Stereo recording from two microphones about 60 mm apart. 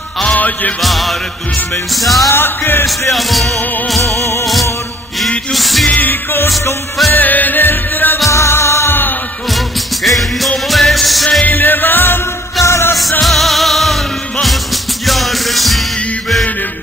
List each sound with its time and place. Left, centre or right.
0.2 s music: left
0.7 s music: centre
2.2 s music: left
3.1 s music: centre
4.0 s music: left
5.5 s music: centre
5.9 s music: left
8.3 s music: left
10.0 s music: centre
11.4 s music: left
12.6 s music: left
13.2 s music: centre